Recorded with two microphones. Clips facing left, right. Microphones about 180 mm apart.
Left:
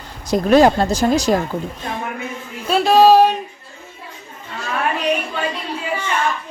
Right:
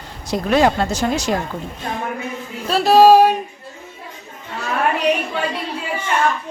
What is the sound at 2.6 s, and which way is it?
Speech, centre (ahead or behind).